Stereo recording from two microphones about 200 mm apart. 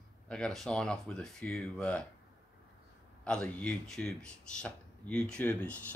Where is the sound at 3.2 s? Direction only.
5° left (ahead or behind).